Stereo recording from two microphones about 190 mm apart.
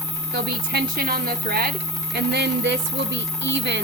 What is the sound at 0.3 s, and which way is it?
A woman's voice, 55° right (ahead or behind).